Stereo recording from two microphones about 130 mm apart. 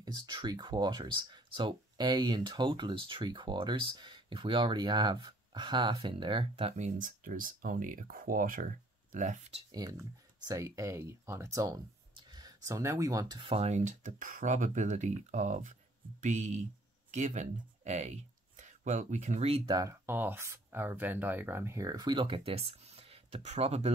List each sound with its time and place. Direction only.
0.0 s speech: 35° right (ahead or behind)
6.8 s speech: 85° right
9.1 s speech: 75° right (ahead or behind)
9.7 s speech: 30° right (ahead or behind)
13.4 s speech: 50° right (ahead or behind)
19.7 s speech: 25° right (ahead or behind); by 23.9 s 55° right (ahead or behind)